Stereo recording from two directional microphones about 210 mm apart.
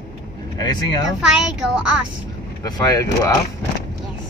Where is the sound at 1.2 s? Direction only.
5° right (ahead or behind).